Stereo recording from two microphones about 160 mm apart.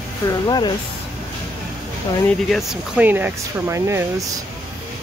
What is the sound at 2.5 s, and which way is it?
Speech, centre (ahead or behind).